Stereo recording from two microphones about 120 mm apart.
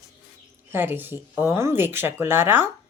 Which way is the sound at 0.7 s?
15° right (ahead or behind).